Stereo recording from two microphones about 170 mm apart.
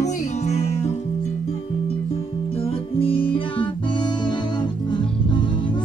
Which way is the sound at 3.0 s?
30° left (ahead or behind).